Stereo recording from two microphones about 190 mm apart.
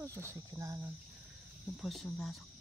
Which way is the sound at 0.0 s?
15° right (ahead or behind).